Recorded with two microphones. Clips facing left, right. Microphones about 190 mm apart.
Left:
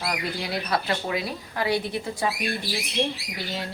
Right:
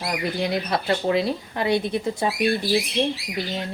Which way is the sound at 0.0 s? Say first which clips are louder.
Right 4 dB; 20° right (ahead or behind).